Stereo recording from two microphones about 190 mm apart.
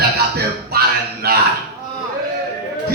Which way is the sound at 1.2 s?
55° right (ahead or behind).